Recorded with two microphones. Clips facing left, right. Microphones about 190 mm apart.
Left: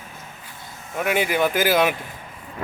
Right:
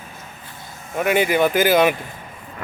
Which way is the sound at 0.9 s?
Centre (ahead or behind).